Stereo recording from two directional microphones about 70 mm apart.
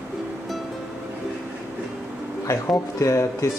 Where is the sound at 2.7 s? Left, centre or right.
Left.